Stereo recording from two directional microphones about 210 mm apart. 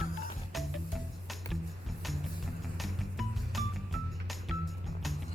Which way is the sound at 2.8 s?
Centre (ahead or behind).